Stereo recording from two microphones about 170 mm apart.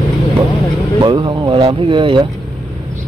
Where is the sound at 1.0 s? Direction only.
30° right (ahead or behind).